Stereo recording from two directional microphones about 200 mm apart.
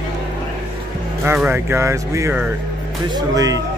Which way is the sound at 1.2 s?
10° right (ahead or behind).